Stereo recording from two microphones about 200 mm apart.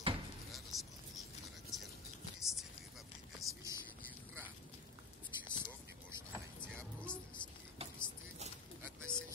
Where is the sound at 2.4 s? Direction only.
Centre (ahead or behind).